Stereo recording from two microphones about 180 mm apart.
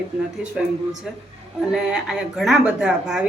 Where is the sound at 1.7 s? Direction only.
Centre (ahead or behind).